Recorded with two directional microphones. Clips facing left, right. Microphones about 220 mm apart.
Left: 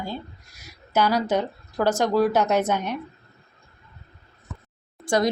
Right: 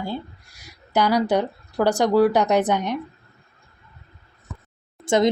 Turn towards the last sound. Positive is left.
turn(degrees=-25)  # may be behind; listen again after turning